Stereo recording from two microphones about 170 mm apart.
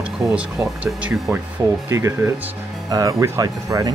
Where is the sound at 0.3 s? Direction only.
5° right (ahead or behind).